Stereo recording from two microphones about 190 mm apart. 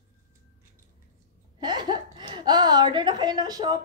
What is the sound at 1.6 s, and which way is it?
A woman's voice, 25° right (ahead or behind).